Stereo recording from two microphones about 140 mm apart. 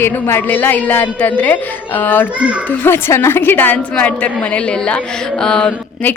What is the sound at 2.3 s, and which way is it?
Speech, 10° right (ahead or behind).